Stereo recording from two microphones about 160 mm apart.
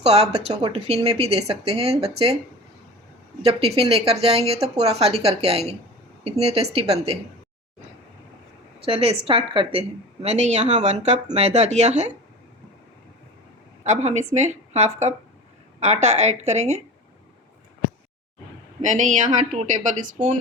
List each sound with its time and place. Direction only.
0.0 s speech: 40° right (ahead or behind)
0.5 s speech: 25° right (ahead or behind)
0.9 s speech: 40° right (ahead or behind)
3.4 s speech: 35° right (ahead or behind)
8.8 s speech: 35° right (ahead or behind)
10.2 s a woman's voice: 45° right (ahead or behind)
13.8 s a woman's voice: 45° right (ahead or behind)
18.8 s a woman's voice: 50° right (ahead or behind)